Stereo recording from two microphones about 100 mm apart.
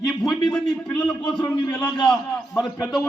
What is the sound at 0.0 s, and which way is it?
A man's voice, 5° left (ahead or behind).